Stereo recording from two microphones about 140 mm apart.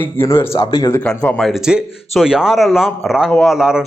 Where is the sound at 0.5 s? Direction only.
35° left (ahead or behind).